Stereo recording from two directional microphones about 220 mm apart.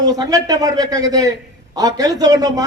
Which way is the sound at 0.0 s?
15° right (ahead or behind).